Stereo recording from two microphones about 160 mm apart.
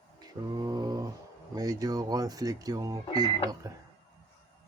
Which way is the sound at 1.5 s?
25° right (ahead or behind).